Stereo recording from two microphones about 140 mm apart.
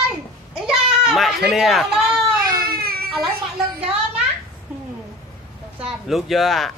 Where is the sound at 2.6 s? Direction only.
90° right.